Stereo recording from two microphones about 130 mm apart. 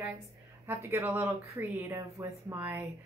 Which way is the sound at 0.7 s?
20° right (ahead or behind).